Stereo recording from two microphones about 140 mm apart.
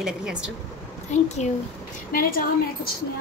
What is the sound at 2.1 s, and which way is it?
Speech, 90° left.